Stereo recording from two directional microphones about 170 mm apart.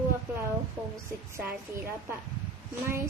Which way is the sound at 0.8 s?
5° right (ahead or behind).